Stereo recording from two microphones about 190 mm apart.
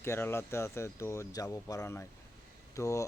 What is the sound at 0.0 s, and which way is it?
Speech, 10° left (ahead or behind).